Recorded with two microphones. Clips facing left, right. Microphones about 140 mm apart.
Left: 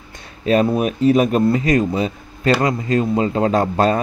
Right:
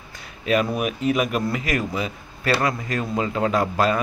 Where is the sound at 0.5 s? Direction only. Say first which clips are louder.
Left 6 dB; 30° left (ahead or behind).